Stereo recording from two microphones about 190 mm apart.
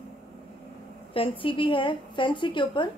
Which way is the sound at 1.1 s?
25° left (ahead or behind).